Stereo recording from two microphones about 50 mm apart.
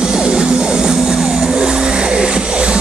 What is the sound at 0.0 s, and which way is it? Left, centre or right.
Vehicle, centre.